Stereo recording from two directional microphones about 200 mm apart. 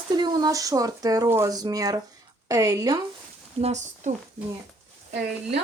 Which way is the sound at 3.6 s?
35° right (ahead or behind).